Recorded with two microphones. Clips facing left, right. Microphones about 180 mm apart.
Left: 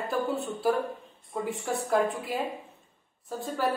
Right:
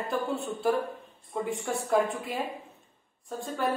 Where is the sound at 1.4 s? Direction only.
Centre (ahead or behind).